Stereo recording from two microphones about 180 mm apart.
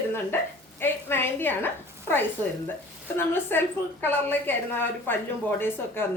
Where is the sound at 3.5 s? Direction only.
10° left (ahead or behind).